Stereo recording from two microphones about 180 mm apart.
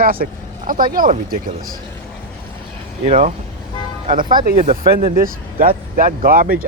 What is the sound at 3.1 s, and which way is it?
Speech, 45° right (ahead or behind).